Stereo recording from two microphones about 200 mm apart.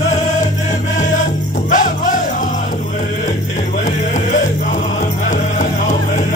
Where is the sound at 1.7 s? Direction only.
40° left (ahead or behind).